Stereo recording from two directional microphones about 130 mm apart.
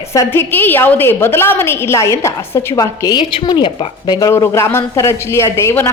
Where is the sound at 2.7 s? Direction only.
30° left (ahead or behind).